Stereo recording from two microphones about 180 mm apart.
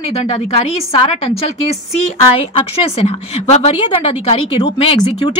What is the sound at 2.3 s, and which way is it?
A woman's voice, 35° left (ahead or behind).